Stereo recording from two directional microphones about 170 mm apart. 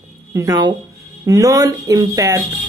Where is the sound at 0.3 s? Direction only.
20° right (ahead or behind).